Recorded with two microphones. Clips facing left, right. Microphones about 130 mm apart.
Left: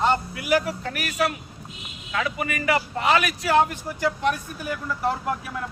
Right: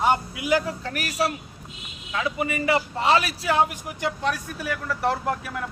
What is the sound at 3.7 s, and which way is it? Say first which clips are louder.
Speech: left 3 dB; 15° right (ahead or behind).